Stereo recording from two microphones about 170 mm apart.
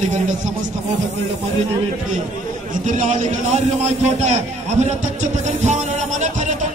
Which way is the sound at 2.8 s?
45° right (ahead or behind).